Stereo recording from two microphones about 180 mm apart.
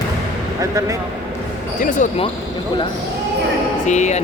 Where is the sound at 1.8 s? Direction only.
45° left (ahead or behind).